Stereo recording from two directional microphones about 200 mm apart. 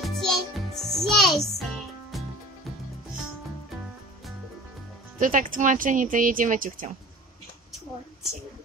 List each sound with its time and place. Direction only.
0.0 s music: centre (ahead or behind)
5.2 s speech: 40° right (ahead or behind)